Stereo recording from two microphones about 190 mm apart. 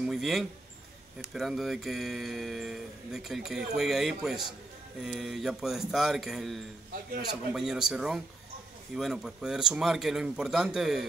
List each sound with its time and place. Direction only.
0.0 s speech: centre (ahead or behind)